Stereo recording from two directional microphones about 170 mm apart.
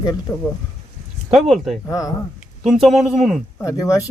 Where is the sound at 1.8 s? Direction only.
20° left (ahead or behind).